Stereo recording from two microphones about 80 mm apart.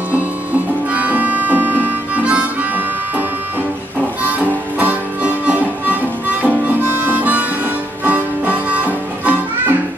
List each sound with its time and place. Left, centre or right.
0.9 s harmonica: centre
4.2 s music: centre
6.4 s harmonica: right